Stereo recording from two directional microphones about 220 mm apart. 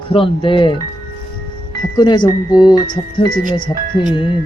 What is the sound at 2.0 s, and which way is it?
Speech, 20° left (ahead or behind).